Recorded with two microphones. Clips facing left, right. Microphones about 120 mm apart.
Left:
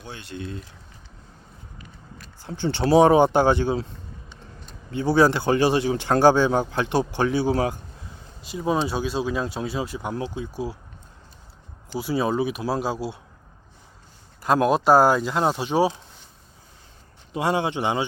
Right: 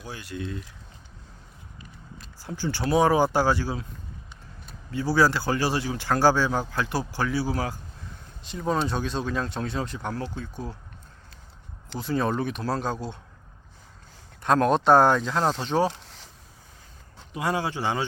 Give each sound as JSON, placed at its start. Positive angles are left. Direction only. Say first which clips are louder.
{"t": 0.0, "sound": "speech", "louder": "even", "side_deg": 25}
{"t": 2.5, "sound": "speech", "louder": "left 6 dB", "side_deg": 25}
{"t": 4.9, "sound": "speech", "louder": "left 4 dB", "side_deg": 25}
{"t": 8.4, "sound": "speech", "louder": "left 2 dB", "side_deg": 10}
{"t": 11.9, "sound": "speech", "louder": "left 3 dB", "side_deg": 10}
{"t": 14.4, "sound": "speech", "louder": "left 1 dB", "side_deg": 5}
{"t": 15.9, "sound": "a sound", "louder": "left 3 dB", "side_deg": -85}
{"t": 17.3, "sound": "speech", "louder": "left 4 dB", "side_deg": 25}